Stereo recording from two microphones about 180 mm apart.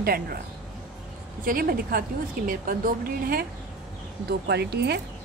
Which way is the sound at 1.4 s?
55° right (ahead or behind).